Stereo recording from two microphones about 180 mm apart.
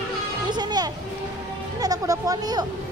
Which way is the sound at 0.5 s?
25° right (ahead or behind).